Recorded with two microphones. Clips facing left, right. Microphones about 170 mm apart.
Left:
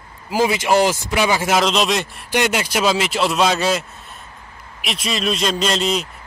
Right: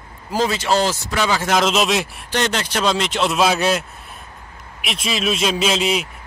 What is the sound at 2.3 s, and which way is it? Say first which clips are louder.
Speech: left 2 dB; 10° left (ahead or behind).